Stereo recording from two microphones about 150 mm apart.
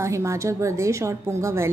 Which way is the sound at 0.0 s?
20° right (ahead or behind).